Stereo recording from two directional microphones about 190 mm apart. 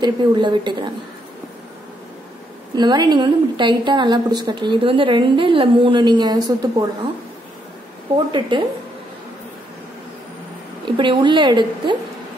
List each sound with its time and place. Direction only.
0.0 s a woman's voice: 25° right (ahead or behind)
2.7 s a woman's voice: 20° right (ahead or behind)
8.3 s a woman's voice: 25° right (ahead or behind)
10.9 s a woman's voice: 25° right (ahead or behind)